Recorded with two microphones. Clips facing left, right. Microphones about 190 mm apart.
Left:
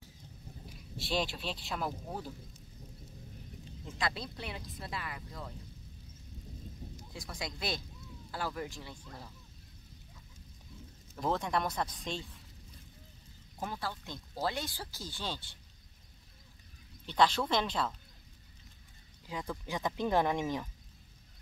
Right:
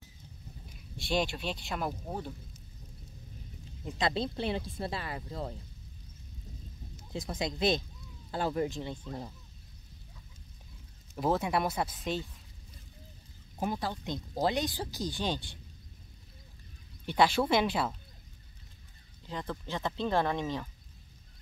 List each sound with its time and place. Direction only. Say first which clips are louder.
0.7 s speech: right 3 dB; centre (ahead or behind)
3.8 s speech: right 6 dB; 25° right (ahead or behind)
7.1 s speech: right 8 dB; 25° right (ahead or behind)
11.1 s speech: right 3 dB; 5° right (ahead or behind)
13.6 s speech: right 6 dB; 15° right (ahead or behind)
17.0 s speech: right 3 dB; 10° right (ahead or behind)
19.2 s speech: right 1 dB; 10° left (ahead or behind)